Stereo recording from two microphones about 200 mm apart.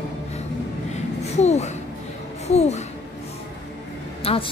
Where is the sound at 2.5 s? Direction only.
35° left (ahead or behind).